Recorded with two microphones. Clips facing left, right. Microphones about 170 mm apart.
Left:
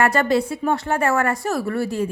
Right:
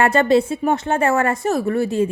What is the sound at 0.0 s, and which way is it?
A woman's voice, 25° right (ahead or behind).